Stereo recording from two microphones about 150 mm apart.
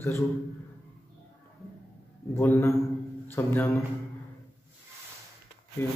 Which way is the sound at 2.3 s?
15° left (ahead or behind).